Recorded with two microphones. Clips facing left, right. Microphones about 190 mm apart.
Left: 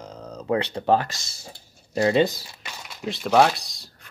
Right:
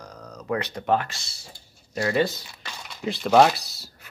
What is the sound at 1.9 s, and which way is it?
Speech, 25° left (ahead or behind).